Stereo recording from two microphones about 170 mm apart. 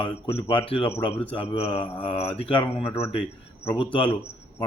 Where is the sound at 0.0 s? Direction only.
35° left (ahead or behind).